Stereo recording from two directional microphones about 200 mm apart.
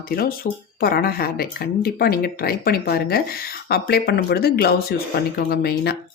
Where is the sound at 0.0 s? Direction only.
50° left (ahead or behind).